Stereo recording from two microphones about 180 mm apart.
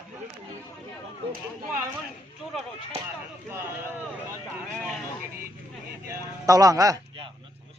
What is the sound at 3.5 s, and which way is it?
Speech, 15° right (ahead or behind).